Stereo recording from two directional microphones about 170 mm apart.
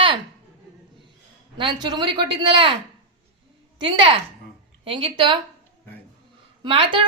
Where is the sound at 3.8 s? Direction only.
25° right (ahead or behind).